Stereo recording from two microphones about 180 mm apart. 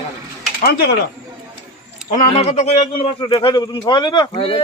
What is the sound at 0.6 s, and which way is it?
Speech, 60° left (ahead or behind).